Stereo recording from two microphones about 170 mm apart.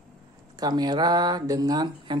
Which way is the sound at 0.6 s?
25° right (ahead or behind).